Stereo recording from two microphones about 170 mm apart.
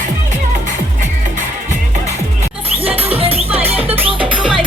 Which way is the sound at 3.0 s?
35° right (ahead or behind).